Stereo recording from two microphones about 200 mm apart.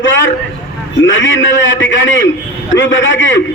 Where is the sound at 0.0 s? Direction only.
70° left (ahead or behind).